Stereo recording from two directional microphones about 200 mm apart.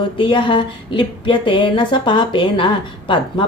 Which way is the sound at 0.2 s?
25° left (ahead or behind).